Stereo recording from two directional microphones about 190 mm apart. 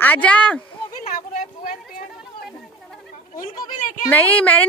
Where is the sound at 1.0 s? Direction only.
45° left (ahead or behind).